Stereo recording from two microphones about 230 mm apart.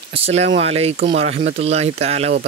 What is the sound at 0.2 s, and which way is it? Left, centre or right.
Speech, right.